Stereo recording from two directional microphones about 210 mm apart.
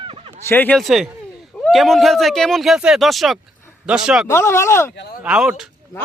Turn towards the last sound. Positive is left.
turn(degrees=-5)  # may be behind; listen again after turning